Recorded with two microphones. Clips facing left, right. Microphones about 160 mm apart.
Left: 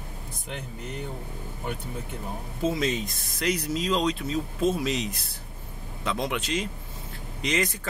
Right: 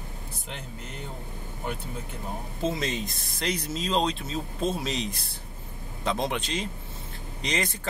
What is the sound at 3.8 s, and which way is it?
Speech, 30° right (ahead or behind).